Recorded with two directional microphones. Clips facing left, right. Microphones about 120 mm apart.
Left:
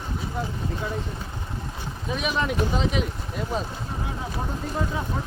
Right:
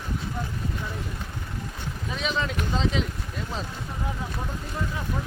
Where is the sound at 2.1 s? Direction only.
15° left (ahead or behind).